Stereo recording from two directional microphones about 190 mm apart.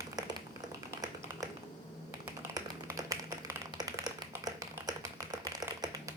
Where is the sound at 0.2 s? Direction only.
20° right (ahead or behind).